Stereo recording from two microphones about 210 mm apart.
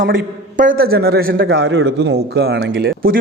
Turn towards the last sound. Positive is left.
turn(degrees=-50)  # may be behind; listen again after turning